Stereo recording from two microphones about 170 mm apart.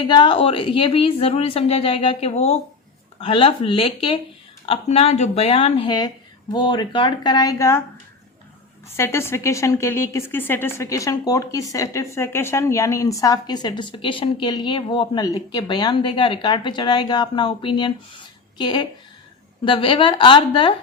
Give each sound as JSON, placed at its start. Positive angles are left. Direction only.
{"t": 0.1, "sound": "a woman's voice", "side_deg": 30}
{"t": 9.0, "sound": "a woman's voice", "side_deg": 15}